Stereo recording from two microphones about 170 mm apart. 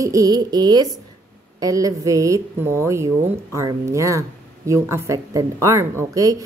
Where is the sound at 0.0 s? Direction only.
20° right (ahead or behind).